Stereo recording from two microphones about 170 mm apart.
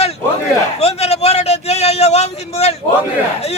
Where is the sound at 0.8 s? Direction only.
40° left (ahead or behind).